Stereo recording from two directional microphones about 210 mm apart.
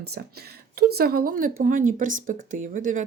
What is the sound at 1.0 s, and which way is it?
Speech, 45° right (ahead or behind).